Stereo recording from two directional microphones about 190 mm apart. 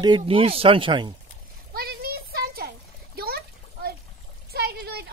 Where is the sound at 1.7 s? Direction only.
55° right (ahead or behind).